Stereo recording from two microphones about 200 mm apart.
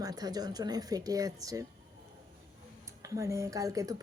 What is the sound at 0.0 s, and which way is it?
Speech, 20° right (ahead or behind).